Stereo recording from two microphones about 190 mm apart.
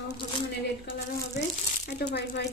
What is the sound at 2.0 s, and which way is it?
Speech, 65° left (ahead or behind).